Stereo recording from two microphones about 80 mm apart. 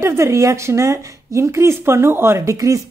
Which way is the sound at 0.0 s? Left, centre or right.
Right.